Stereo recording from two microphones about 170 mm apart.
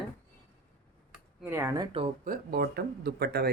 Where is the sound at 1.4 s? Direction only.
15° right (ahead or behind).